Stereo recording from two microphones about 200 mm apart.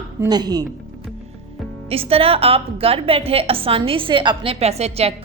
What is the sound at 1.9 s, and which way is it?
A woman's voice, 30° right (ahead or behind).